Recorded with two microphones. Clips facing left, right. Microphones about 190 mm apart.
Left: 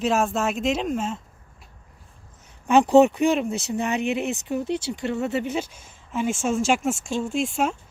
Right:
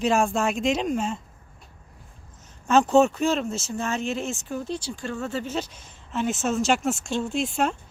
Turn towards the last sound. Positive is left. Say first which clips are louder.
# left 1 dB
turn(degrees=5)  # may be behind; listen again after turning